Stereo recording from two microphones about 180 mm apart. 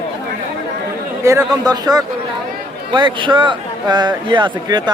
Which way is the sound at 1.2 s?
15° right (ahead or behind).